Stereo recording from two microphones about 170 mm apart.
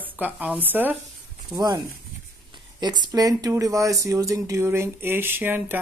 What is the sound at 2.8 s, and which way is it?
Speech, 25° right (ahead or behind).